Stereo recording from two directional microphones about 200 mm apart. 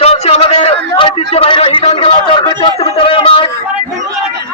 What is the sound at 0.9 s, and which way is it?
A man's voice, 25° left (ahead or behind).